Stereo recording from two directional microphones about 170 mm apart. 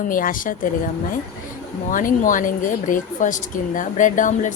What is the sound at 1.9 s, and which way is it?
Speech, 50° left (ahead or behind).